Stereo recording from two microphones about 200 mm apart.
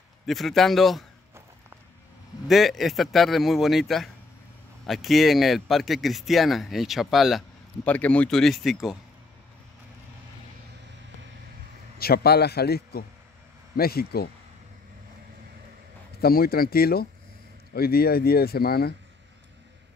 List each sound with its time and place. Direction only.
0.3 s speech: centre (ahead or behind)
2.4 s speech: centre (ahead or behind)
12.0 s speech: 50° left (ahead or behind)
16.2 s speech: 50° left (ahead or behind)